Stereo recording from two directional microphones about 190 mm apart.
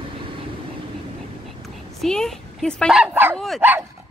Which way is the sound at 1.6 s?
Centre (ahead or behind).